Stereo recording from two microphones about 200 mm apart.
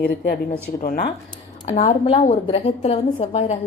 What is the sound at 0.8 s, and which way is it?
Speech, 45° left (ahead or behind).